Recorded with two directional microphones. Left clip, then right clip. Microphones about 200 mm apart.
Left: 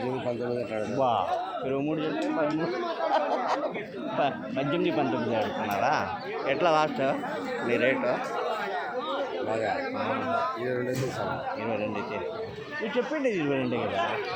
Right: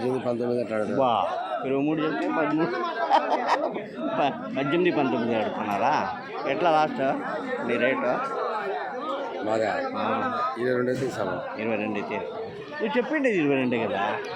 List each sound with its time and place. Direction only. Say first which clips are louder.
0.0 s a sound: right 4 dB; 50° right (ahead or behind)
0.9 s a man's voice: right 2 dB; 10° right (ahead or behind)
3.1 s a man's voice: right 5 dB; 10° right (ahead or behind)
10.6 s a man's voice: right 5 dB; 45° right (ahead or behind)
13.0 s a man's voice: right 4 dB; 15° right (ahead or behind)